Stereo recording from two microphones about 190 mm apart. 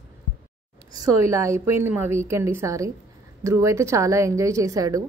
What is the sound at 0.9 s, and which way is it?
A woman's voice, 15° right (ahead or behind).